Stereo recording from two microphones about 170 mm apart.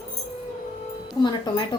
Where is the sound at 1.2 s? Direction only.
30° left (ahead or behind).